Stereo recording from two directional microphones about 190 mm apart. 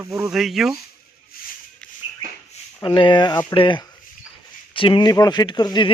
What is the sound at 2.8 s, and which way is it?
Speech, 25° left (ahead or behind).